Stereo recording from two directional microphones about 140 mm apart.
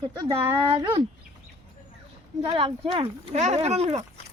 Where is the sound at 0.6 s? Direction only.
40° right (ahead or behind).